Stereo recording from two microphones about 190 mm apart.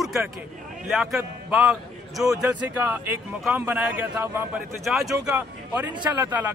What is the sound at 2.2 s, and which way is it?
A man's voice, 20° right (ahead or behind).